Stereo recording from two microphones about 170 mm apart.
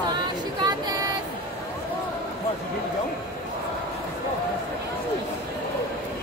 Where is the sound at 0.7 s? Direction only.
25° right (ahead or behind).